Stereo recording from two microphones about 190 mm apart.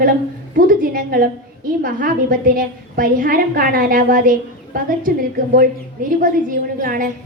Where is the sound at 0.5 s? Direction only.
50° right (ahead or behind).